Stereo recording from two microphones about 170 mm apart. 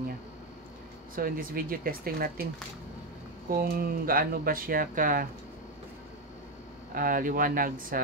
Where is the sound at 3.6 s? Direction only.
60° right (ahead or behind).